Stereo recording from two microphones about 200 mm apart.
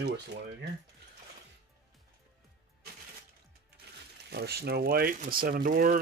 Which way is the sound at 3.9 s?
55° right (ahead or behind).